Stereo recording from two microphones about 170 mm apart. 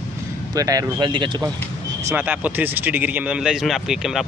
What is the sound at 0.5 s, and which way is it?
Speech, 20° right (ahead or behind).